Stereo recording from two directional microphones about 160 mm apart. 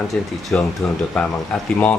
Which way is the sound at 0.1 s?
Centre (ahead or behind).